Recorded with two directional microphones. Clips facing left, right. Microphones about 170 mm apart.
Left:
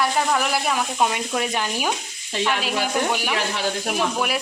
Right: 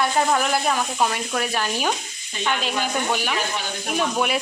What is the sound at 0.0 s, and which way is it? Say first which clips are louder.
Speech: right 1 dB; 5° left (ahead or behind).